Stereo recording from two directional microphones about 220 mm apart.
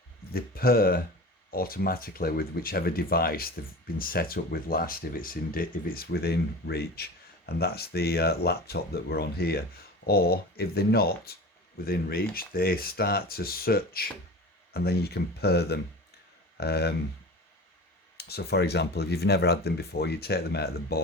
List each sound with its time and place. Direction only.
0.3 s speech: 45° left (ahead or behind)
18.2 s speech: 45° left (ahead or behind)